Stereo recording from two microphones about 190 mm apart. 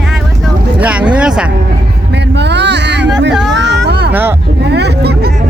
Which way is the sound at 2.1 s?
65° right (ahead or behind).